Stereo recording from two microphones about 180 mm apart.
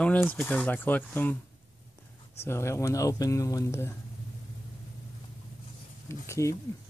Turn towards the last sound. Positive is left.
turn(degrees=15)  # may be behind; listen again after turning